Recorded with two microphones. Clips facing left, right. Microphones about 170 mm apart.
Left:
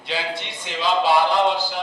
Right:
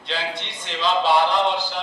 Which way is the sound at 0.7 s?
10° left (ahead or behind).